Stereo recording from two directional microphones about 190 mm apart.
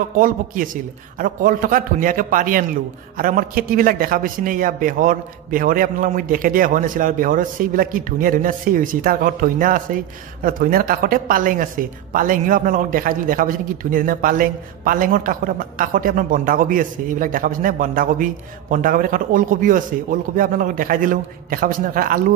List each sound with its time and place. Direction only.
1.1 s a man's voice: 45° right (ahead or behind)